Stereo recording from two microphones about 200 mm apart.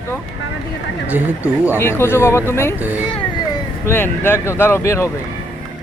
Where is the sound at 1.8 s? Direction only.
10° left (ahead or behind).